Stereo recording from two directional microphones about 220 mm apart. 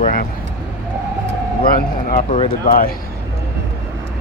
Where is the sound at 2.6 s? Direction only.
40° left (ahead or behind).